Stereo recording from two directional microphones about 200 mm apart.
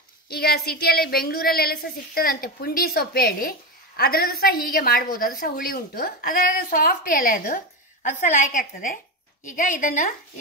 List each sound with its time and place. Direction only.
0.3 s a woman's voice: 50° left (ahead or behind)